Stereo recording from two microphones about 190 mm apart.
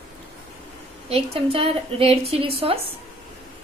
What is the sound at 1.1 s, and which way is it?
A woman's voice, 30° right (ahead or behind).